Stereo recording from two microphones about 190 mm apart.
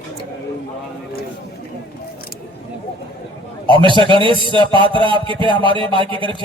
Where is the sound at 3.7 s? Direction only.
25° right (ahead or behind).